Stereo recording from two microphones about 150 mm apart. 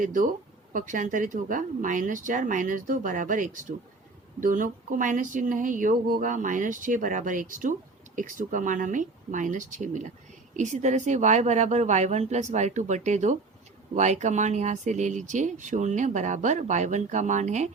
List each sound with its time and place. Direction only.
0.0 s speech: 60° right (ahead or behind)